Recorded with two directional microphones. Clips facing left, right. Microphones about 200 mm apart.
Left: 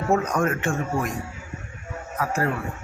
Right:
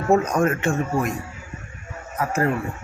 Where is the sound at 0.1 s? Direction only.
25° right (ahead or behind).